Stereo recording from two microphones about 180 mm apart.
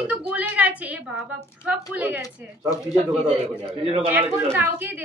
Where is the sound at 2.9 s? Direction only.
35° right (ahead or behind).